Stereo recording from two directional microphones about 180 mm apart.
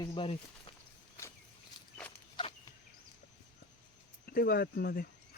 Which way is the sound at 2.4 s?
30° left (ahead or behind).